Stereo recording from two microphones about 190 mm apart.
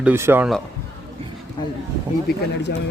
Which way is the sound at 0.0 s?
10° right (ahead or behind).